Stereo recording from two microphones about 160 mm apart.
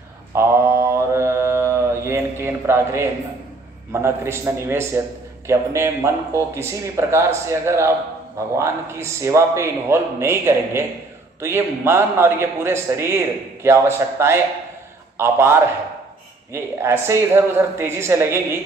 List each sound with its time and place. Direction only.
0.3 s mantra: 15° right (ahead or behind)
3.9 s a man's voice: 15° right (ahead or behind)